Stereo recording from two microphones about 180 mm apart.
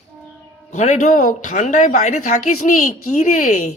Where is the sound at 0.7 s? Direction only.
40° left (ahead or behind).